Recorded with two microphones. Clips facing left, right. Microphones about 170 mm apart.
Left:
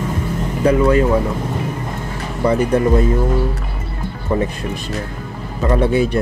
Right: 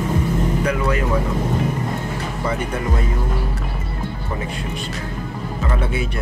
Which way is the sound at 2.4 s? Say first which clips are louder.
Left 10 dB; 35° left (ahead or behind).